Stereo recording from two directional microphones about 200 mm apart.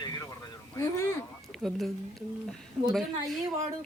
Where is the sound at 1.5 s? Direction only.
Centre (ahead or behind).